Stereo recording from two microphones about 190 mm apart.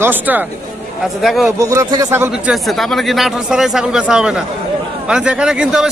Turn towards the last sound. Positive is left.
turn(degrees=-5)  # may be behind; listen again after turning